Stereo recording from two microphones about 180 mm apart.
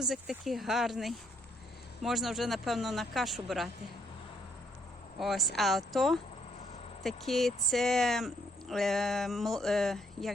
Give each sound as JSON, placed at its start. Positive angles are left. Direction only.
{"t": 0.0, "sound": "speech", "side_deg": 0}
{"t": 5.2, "sound": "speech", "side_deg": 0}